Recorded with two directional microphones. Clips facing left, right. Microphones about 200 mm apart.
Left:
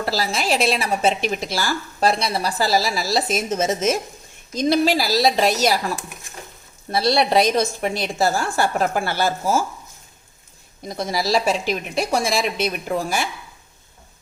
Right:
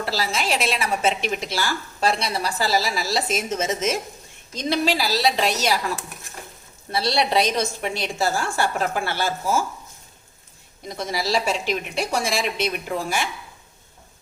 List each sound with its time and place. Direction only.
0.0 s speech: 40° left (ahead or behind)
6.9 s speech: 45° left (ahead or behind)
10.8 s speech: 40° left (ahead or behind)